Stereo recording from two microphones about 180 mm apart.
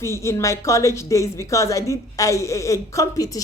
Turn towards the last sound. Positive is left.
turn(degrees=20)  # may be behind; listen again after turning